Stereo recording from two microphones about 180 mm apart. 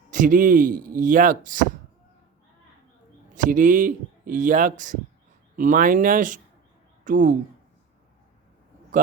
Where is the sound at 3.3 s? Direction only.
45° right (ahead or behind).